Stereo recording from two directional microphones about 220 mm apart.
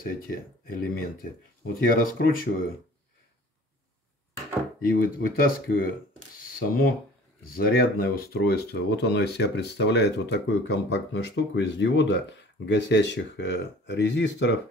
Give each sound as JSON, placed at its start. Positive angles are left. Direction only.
{"t": 0.0, "sound": "speech", "side_deg": 40}
{"t": 4.8, "sound": "speech", "side_deg": 40}